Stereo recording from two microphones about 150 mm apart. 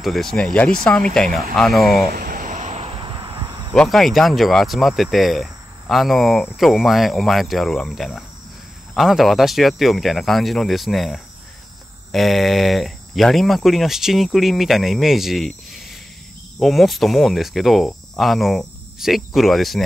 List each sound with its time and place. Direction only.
0.0 s speech: centre (ahead or behind)
2.1 s cricket: 65° right (ahead or behind); by 3.7 s 30° right (ahead or behind)
3.7 s speech: 5° left (ahead or behind)